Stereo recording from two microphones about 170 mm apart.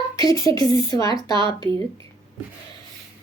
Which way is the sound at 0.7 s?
20° left (ahead or behind).